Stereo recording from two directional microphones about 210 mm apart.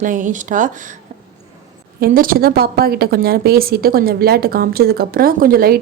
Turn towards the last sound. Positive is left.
turn(degrees=-45)  # may be behind; listen again after turning